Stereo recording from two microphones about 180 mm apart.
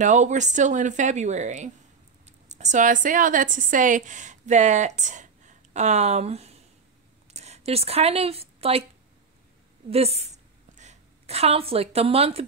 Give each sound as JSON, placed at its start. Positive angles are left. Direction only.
{"t": 0.0, "sound": "a woman's voice", "side_deg": -40}
{"t": 9.8, "sound": "a woman's voice", "side_deg": -35}